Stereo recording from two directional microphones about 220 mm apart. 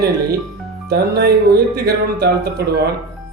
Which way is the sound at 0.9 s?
45° right (ahead or behind).